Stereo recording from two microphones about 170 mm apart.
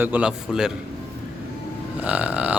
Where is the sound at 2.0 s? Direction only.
10° right (ahead or behind).